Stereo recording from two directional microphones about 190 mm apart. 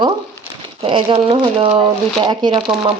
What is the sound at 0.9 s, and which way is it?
Speech, 25° right (ahead or behind).